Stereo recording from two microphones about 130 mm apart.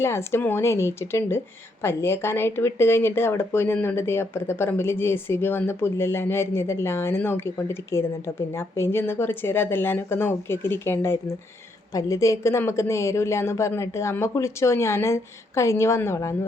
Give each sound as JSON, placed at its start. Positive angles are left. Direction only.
{"t": 0.0, "sound": "speech", "side_deg": 20}